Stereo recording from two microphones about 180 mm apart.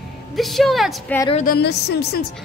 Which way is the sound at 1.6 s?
65° left (ahead or behind).